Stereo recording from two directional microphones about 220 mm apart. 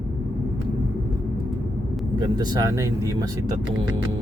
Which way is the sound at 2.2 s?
20° right (ahead or behind).